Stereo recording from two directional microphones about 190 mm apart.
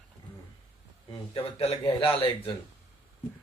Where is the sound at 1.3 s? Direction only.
30° left (ahead or behind).